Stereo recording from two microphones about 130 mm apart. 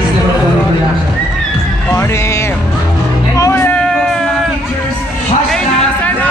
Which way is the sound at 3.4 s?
25° left (ahead or behind).